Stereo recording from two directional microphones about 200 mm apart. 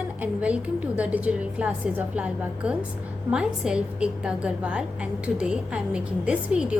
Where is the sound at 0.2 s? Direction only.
5° right (ahead or behind).